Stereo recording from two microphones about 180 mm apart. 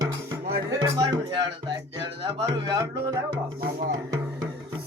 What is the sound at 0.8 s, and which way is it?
Music, 25° right (ahead or behind).